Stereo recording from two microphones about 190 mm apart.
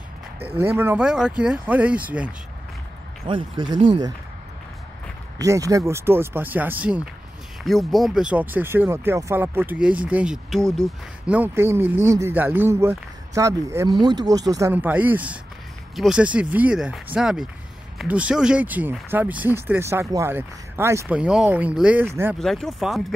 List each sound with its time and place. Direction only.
0.4 s speech: 10° right (ahead or behind)
3.3 s speech: 25° right (ahead or behind)
5.4 s speech: 15° right (ahead or behind)
22.4 s speech: centre (ahead or behind)